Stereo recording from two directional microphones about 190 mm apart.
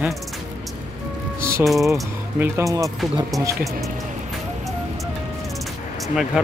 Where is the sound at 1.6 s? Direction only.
Centre (ahead or behind).